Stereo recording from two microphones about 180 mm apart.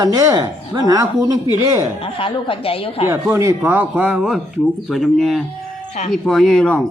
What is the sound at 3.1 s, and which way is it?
Speech, 15° right (ahead or behind).